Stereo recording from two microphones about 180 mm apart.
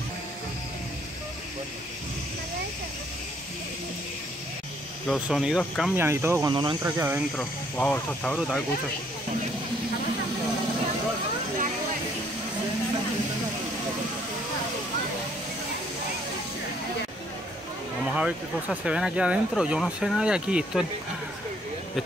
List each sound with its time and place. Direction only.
5.0 s speech: centre (ahead or behind)
5.9 s speech: 15° right (ahead or behind)
6.5 s speech: 25° right (ahead or behind)
7.3 s speech: 10° left (ahead or behind)
18.1 s speech: 5° right (ahead or behind)